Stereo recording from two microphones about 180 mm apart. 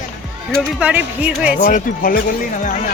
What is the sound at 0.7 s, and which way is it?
Speech, 10° right (ahead or behind).